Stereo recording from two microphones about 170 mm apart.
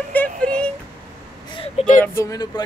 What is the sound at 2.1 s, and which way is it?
Speech, 20° left (ahead or behind).